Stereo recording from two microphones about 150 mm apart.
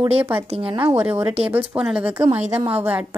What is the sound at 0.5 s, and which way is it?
Speech, 35° right (ahead or behind).